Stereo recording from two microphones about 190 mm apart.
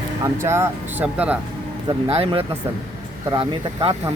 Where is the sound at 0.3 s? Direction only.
15° right (ahead or behind).